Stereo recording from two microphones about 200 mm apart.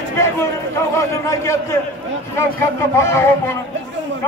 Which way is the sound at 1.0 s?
15° left (ahead or behind).